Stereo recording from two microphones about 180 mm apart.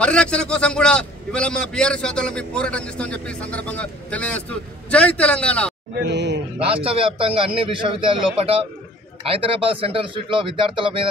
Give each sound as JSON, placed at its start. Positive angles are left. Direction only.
{"t": 0.0, "sound": "a man's voice", "side_deg": 5}
{"t": 5.9, "sound": "a man's voice", "side_deg": -75}
{"t": 6.6, "sound": "a man's voice", "side_deg": -30}